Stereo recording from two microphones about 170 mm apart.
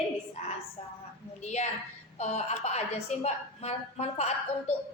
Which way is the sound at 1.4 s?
40° left (ahead or behind).